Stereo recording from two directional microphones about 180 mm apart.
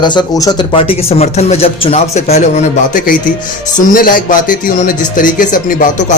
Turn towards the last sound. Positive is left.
turn(degrees=45)  # may be behind; listen again after turning